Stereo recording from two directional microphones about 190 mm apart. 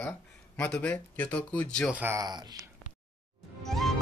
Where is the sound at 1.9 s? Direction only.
10° right (ahead or behind).